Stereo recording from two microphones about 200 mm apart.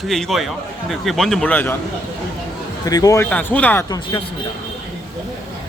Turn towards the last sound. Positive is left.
turn(degrees=10)  # may be behind; listen again after turning